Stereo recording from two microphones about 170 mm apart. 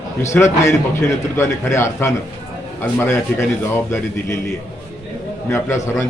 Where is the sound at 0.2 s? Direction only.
15° left (ahead or behind).